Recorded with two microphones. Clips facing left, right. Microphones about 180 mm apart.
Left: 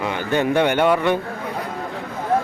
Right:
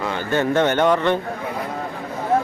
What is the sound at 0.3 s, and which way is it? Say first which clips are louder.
Speech: even; 15° left (ahead or behind).